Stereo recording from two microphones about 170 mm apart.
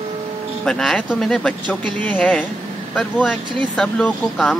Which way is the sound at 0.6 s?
Centre (ahead or behind).